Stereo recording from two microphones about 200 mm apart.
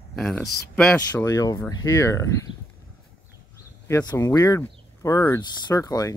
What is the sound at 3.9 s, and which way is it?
Speech, 15° left (ahead or behind).